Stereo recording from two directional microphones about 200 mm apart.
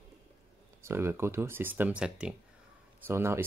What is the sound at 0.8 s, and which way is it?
Speech, 10° right (ahead or behind).